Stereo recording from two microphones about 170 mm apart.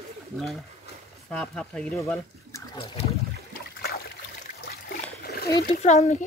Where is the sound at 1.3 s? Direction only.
5° left (ahead or behind).